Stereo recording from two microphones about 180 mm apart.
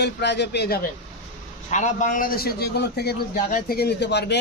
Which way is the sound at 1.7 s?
45° left (ahead or behind).